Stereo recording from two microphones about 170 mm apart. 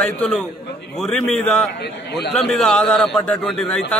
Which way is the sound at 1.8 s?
80° left.